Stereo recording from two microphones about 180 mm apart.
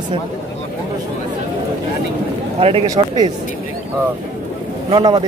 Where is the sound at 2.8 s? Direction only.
20° right (ahead or behind).